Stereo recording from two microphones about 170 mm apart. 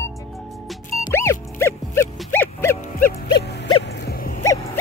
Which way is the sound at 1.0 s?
15° left (ahead or behind).